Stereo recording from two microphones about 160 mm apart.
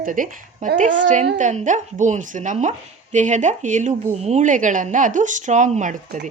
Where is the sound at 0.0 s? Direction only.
55° right (ahead or behind).